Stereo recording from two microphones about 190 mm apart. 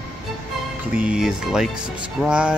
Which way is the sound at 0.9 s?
5° right (ahead or behind).